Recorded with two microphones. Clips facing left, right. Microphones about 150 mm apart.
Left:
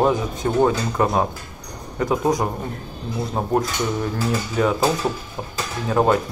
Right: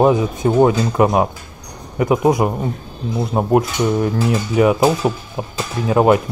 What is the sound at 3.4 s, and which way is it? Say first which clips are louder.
Speech: right 7 dB; 25° right (ahead or behind).